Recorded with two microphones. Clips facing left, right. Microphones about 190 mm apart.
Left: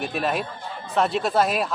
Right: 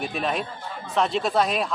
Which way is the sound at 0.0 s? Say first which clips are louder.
Left 1 dB; 5° left (ahead or behind).